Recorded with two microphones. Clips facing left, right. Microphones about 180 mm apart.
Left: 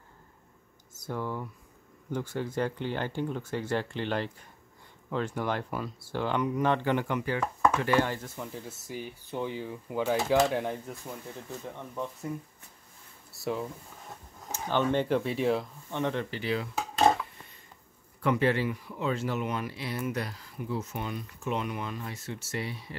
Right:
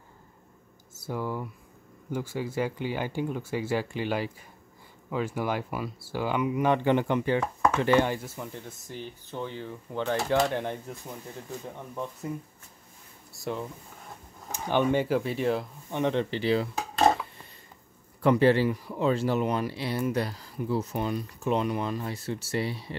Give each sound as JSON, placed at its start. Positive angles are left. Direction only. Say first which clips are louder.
{"t": 1.0, "sound": "speech", "louder": "right 2 dB", "side_deg": -10}
{"t": 8.4, "sound": "speech", "louder": "even", "side_deg": 5}
{"t": 13.3, "sound": "a sound", "louder": "left 1 dB", "side_deg": 0}
{"t": 14.5, "sound": "speech", "louder": "right 3 dB", "side_deg": -15}
{"t": 15.9, "sound": "speech", "louder": "right 4 dB", "side_deg": -20}
{"t": 18.2, "sound": "speech", "louder": "right 5 dB", "side_deg": -35}